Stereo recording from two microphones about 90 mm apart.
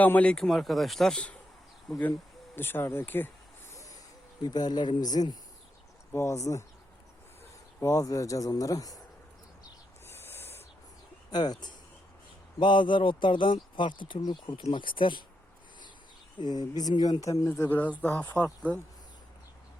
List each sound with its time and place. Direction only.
0.0 s speech: 15° left (ahead or behind)
0.3 s speech: 5° left (ahead or behind)
2.6 s speech: 25° left (ahead or behind)
4.4 s speech: 50° left (ahead or behind)
6.1 s speech: 35° left (ahead or behind)
7.8 s speech: 40° left (ahead or behind)
10.1 s owl: 25° left (ahead or behind)
11.3 s speech: 50° left (ahead or behind)
12.5 s speech: 65° left (ahead or behind)
16.4 s speech: 50° left (ahead or behind); by 18.4 s 20° left (ahead or behind)